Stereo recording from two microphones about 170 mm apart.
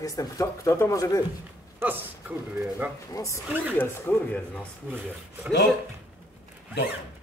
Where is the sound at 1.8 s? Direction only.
10° right (ahead or behind).